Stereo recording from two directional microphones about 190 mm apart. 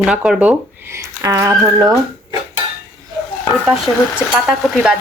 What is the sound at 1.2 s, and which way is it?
Speech, 15° right (ahead or behind).